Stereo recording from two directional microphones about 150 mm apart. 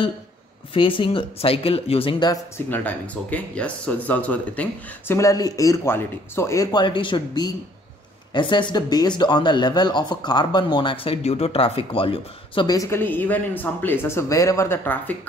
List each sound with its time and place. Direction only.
0.7 s speech: 35° left (ahead or behind)
2.5 s speech: 10° left (ahead or behind)